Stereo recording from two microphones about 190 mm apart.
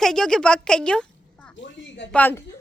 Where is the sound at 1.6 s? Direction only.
70° left (ahead or behind).